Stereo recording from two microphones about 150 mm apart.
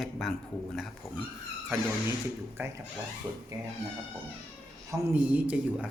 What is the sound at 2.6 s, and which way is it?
Speech, 15° right (ahead or behind).